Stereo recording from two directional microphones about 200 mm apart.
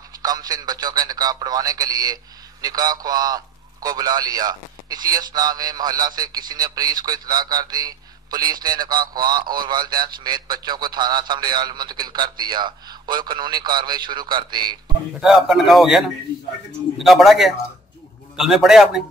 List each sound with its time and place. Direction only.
0.2 s a man's voice: 20° right (ahead or behind)
15.2 s a man's voice: centre (ahead or behind)